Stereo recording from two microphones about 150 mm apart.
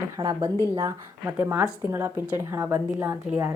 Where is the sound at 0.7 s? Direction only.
15° right (ahead or behind).